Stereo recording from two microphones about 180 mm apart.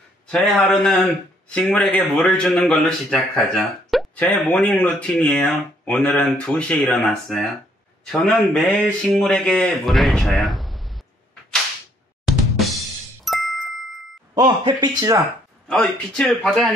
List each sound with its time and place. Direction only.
0.3 s a man's voice: 5° left (ahead or behind)
12.3 s drum kit: centre (ahead or behind)
13.2 s music: centre (ahead or behind)
14.3 s speech: 25° right (ahead or behind)
15.7 s a man's voice: 5° left (ahead or behind)